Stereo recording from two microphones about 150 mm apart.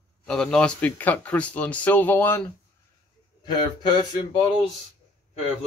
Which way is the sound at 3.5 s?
30° left (ahead or behind).